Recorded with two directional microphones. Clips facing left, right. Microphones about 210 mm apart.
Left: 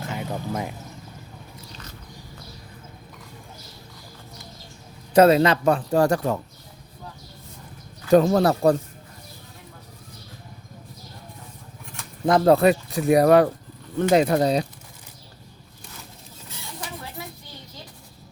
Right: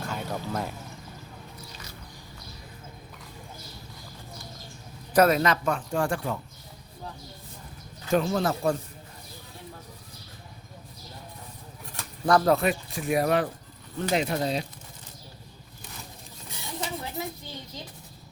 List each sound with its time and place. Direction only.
0.1 s a sound: 15° left (ahead or behind)
5.1 s speech: 30° left (ahead or behind)
8.1 s speech: 40° left (ahead or behind)
12.2 s speech: 20° left (ahead or behind)
12.6 s speech: 35° left (ahead or behind)
14.1 s speech: 55° left (ahead or behind)
16.8 s a sound: 20° right (ahead or behind)